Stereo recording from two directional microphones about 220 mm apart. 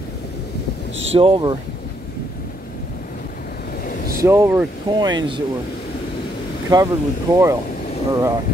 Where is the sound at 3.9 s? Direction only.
40° left (ahead or behind).